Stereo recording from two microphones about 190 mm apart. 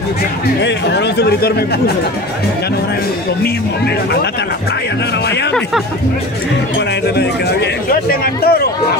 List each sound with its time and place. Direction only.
0.6 s speech: 65° left (ahead or behind)
7.2 s speech: 55° left (ahead or behind)